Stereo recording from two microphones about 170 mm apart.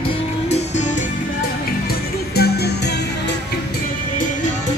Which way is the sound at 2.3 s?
70° left (ahead or behind).